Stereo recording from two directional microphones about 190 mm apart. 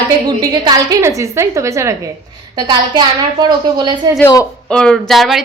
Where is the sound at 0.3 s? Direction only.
20° right (ahead or behind).